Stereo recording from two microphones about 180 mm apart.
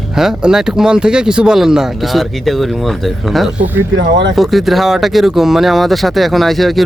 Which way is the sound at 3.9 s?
80° right.